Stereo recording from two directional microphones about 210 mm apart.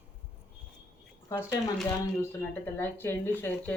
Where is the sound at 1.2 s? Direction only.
15° left (ahead or behind).